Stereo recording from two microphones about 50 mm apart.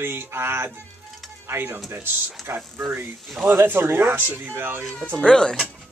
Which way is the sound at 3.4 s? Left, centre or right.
Right.